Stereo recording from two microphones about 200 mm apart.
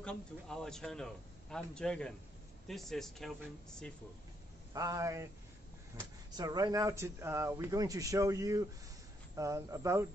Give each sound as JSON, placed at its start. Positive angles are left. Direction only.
{"t": 0.0, "sound": "a man's voice", "side_deg": 5}
{"t": 4.7, "sound": "speech", "side_deg": -15}
{"t": 6.3, "sound": "speech", "side_deg": -20}